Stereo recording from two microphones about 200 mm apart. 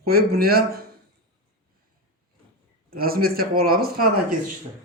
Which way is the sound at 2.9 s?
45° right (ahead or behind).